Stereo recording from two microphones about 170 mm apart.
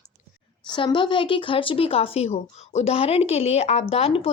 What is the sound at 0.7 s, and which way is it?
Speech, 30° left (ahead or behind).